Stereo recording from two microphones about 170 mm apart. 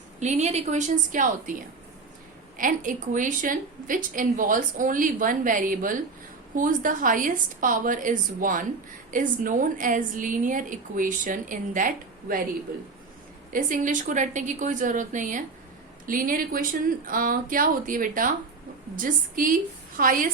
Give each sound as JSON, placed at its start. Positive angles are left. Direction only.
{"t": 0.2, "sound": "a woman's voice", "side_deg": -40}
{"t": 2.6, "sound": "a woman's voice", "side_deg": -50}
{"t": 13.5, "sound": "a woman's voice", "side_deg": -50}